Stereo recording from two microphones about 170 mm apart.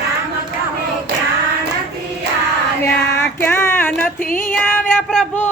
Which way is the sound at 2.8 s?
15° left (ahead or behind).